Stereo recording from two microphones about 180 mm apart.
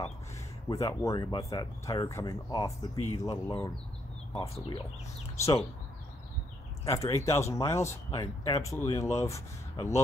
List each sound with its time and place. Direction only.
0.7 s speech: 20° left (ahead or behind)
6.8 s speech: 15° left (ahead or behind)